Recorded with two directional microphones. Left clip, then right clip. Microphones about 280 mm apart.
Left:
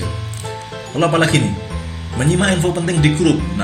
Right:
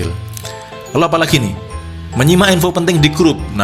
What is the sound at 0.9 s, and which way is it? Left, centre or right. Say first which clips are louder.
A man's voice: right 3 dB; right.